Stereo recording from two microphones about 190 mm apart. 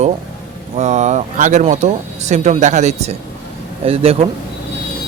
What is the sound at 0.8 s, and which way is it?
Speech, 40° right (ahead or behind).